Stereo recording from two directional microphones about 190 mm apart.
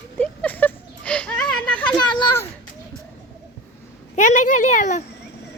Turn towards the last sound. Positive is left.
turn(degrees=40)  # may be behind; listen again after turning